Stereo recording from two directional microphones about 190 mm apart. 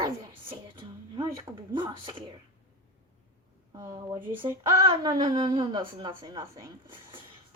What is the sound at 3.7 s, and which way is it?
A woman's voice, 25° right (ahead or behind).